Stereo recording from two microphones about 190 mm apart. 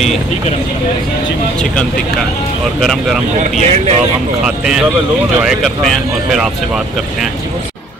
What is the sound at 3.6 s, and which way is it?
Speech, 35° right (ahead or behind).